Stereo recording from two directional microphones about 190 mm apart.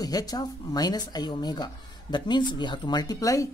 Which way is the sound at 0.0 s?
20° left (ahead or behind).